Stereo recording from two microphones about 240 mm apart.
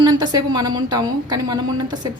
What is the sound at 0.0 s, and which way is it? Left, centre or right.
A woman's voice, centre.